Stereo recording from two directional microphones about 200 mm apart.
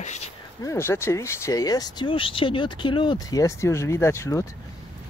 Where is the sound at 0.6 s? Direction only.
15° left (ahead or behind).